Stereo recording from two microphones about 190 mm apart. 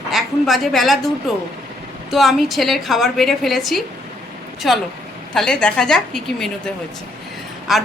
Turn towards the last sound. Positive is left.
turn(degrees=0)  # may be behind; listen again after turning